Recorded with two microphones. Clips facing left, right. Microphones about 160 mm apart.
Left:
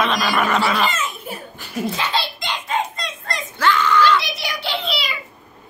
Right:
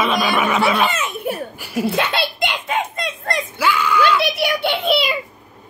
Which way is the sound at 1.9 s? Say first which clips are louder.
Right 3 dB; 60° right (ahead or behind).